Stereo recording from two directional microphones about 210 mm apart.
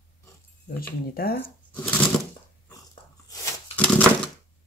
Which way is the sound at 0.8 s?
45° left (ahead or behind).